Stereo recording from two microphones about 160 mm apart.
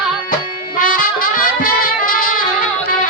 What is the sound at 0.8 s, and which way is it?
Music, 60° left (ahead or behind).